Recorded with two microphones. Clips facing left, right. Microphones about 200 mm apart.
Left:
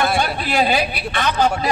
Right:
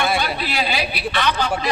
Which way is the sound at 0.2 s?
45° left (ahead or behind).